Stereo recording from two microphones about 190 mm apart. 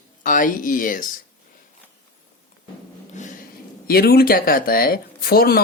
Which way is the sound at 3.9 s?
55° left (ahead or behind).